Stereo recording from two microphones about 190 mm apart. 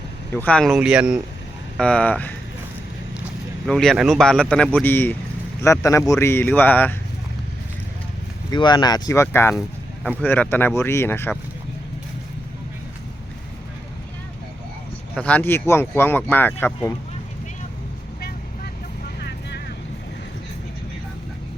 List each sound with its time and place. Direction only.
0.3 s speech: 5° left (ahead or behind)
3.7 s speech: 5° left (ahead or behind)
8.4 s speech: 25° left (ahead or behind)
9.6 s speech: centre (ahead or behind)
15.1 s speech: 5° left (ahead or behind)
19.2 s vehicle: 60° left (ahead or behind)